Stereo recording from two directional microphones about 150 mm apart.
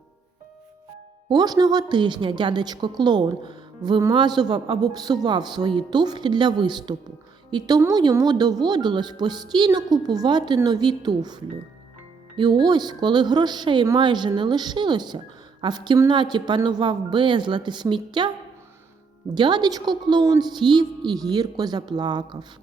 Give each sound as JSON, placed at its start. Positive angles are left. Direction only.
{"t": 1.3, "sound": "a woman's voice", "side_deg": -25}
{"t": 19.3, "sound": "a woman's voice", "side_deg": -30}